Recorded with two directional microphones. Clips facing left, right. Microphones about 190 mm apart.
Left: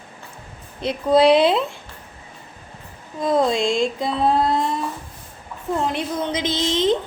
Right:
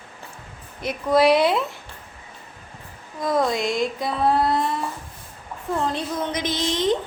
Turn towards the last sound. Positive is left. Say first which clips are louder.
# left 2 dB
turn(degrees=20)  # may be behind; listen again after turning